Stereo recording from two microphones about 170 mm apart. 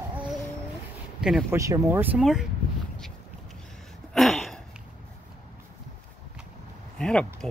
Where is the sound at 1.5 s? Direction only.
15° right (ahead or behind).